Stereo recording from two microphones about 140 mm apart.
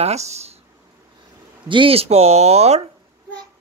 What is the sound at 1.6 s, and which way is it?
Speech, 40° right (ahead or behind).